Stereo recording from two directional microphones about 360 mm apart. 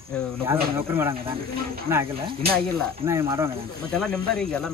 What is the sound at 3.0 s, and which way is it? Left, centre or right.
Speech, centre.